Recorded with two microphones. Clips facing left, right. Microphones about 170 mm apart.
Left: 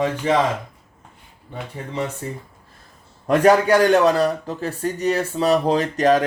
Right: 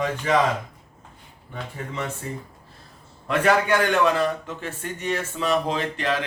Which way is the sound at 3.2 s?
40° left (ahead or behind).